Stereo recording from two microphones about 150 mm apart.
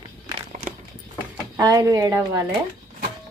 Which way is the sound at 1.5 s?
20° right (ahead or behind).